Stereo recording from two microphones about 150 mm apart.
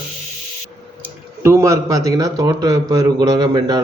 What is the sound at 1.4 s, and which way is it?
Speech, 15° right (ahead or behind).